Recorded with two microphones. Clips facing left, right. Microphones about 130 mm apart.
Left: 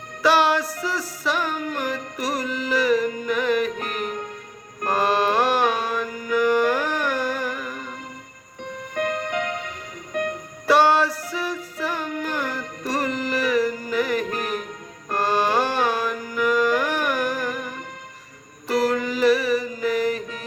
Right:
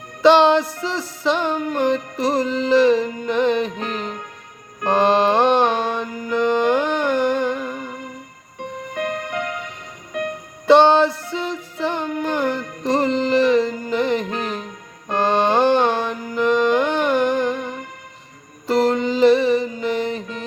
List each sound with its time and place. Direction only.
0.2 s music: 25° right (ahead or behind)
10.7 s female singing: 25° right (ahead or behind)
15.1 s music: 25° right (ahead or behind)